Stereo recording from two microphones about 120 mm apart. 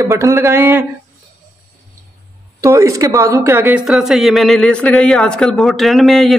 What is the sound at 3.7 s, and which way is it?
Speech, 5° right (ahead or behind).